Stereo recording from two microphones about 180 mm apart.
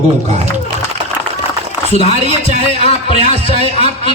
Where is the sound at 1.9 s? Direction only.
35° left (ahead or behind).